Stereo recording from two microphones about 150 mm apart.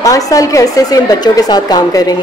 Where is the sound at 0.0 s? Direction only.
20° left (ahead or behind).